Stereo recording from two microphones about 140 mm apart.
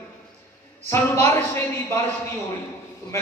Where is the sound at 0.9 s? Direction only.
15° left (ahead or behind).